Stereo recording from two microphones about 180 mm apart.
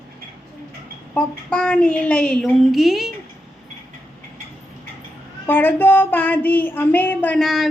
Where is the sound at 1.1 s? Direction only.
5° left (ahead or behind).